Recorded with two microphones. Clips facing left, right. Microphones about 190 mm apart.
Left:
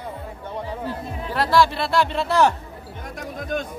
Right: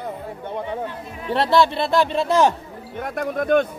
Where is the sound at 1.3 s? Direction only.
25° right (ahead or behind).